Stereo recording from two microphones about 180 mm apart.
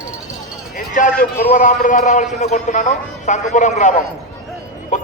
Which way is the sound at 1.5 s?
45° left (ahead or behind).